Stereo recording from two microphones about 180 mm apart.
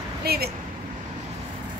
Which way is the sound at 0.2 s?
60° right (ahead or behind).